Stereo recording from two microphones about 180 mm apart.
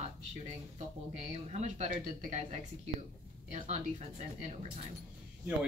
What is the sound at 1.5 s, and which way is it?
A woman's voice, 40° right (ahead or behind).